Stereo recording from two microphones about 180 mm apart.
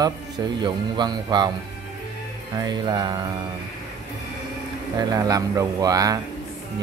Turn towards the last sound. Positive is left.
turn(degrees=-20)  # may be behind; listen again after turning